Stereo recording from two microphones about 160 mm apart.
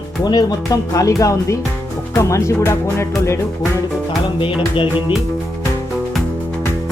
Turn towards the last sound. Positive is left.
turn(degrees=35)  # may be behind; listen again after turning